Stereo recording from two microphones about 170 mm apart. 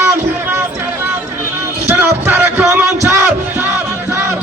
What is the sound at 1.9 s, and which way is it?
Music, 10° right (ahead or behind).